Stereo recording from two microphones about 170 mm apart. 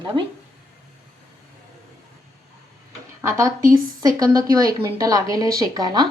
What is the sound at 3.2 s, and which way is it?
Speech, 15° right (ahead or behind).